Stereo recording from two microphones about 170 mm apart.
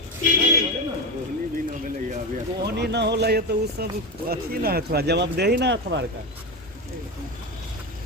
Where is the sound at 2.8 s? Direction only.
80° right.